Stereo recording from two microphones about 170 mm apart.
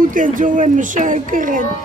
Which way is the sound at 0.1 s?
50° right (ahead or behind).